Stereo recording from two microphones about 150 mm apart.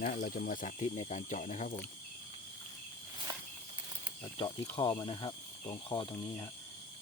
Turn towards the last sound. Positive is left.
turn(degrees=30)  # may be behind; listen again after turning